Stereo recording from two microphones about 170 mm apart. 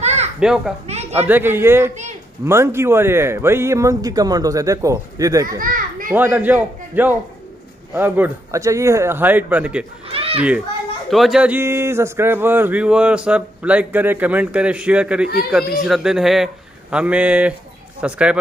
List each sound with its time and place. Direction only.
0.0 s children playing: 40° right (ahead or behind)
0.4 s speech: 5° right (ahead or behind); by 5.6 s 20° right (ahead or behind)
5.6 s children playing: 55° right (ahead or behind)
6.1 s speech: 10° right (ahead or behind)
10.0 s a sound: 35° right (ahead or behind)
11.1 s speech: centre (ahead or behind)